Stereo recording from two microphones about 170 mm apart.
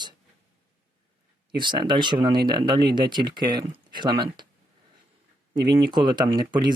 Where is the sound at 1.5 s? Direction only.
25° right (ahead or behind).